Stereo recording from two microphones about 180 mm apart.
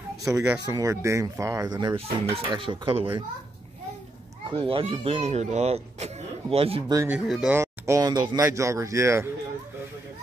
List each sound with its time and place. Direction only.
0.2 s speech: 15° right (ahead or behind)
4.6 s speech: 30° right (ahead or behind)
7.1 s speech: 5° right (ahead or behind)
7.6 s speech: 15° right (ahead or behind)